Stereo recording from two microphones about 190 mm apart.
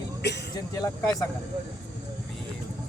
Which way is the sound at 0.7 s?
20° left (ahead or behind).